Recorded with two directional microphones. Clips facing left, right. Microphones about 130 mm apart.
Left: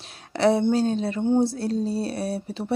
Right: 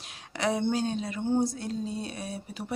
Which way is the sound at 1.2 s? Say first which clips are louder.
Left 5 dB; 25° left (ahead or behind).